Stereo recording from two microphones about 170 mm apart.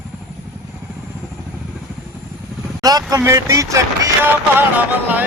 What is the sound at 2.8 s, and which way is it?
Speech, 20° right (ahead or behind).